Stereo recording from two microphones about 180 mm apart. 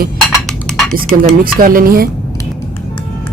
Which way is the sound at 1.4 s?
50° right (ahead or behind).